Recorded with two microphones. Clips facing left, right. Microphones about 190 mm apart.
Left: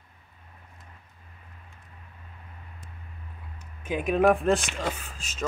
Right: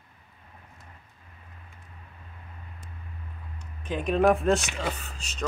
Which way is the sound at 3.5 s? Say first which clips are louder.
Left 2 dB; 5° left (ahead or behind).